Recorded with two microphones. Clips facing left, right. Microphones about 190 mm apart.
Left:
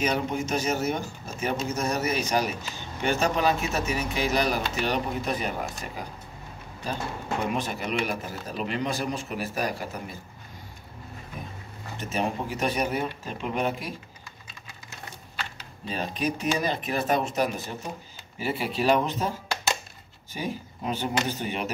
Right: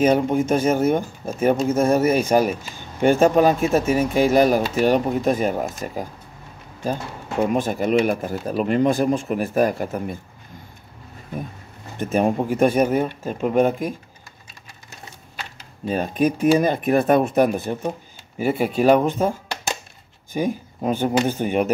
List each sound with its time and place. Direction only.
0.0 s speech: 50° right (ahead or behind)
7.5 s speech: 50° right (ahead or behind)
12.0 s speech: 50° right (ahead or behind)
15.8 s speech: 50° right (ahead or behind)
20.3 s speech: 50° right (ahead or behind)